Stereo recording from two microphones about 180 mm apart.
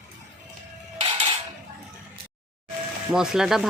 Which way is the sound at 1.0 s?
30° right (ahead or behind).